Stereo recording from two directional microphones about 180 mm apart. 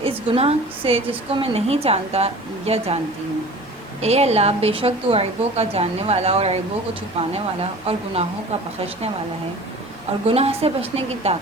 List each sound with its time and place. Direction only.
0.0 s a woman's voice: 35° right (ahead or behind)
4.0 s a woman's voice: 35° right (ahead or behind)
10.2 s a woman's voice: 35° right (ahead or behind)